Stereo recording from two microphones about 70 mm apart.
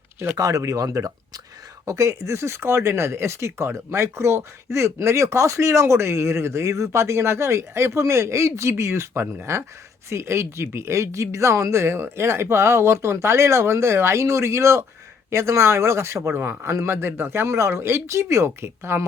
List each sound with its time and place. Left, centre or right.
0.3 s speech: right